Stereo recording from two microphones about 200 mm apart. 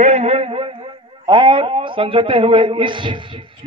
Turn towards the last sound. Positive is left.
turn(degrees=-25)  # may be behind; listen again after turning